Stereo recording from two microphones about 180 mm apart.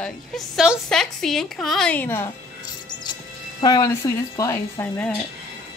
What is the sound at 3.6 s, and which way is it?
Speech, 20° left (ahead or behind).